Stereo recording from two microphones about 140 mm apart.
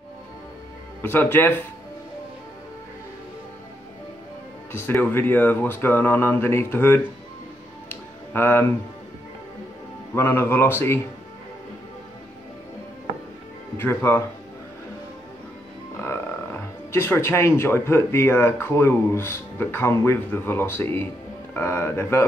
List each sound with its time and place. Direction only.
1.0 s speech: 15° left (ahead or behind)
4.8 s speech: 15° left (ahead or behind)
7.9 s music: 15° left (ahead or behind)
10.1 s speech: 15° left (ahead or behind)
13.7 s speech: 15° left (ahead or behind)
16.0 s speech: 15° left (ahead or behind)